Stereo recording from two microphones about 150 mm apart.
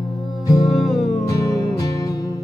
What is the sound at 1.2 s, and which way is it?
Music, 25° left (ahead or behind).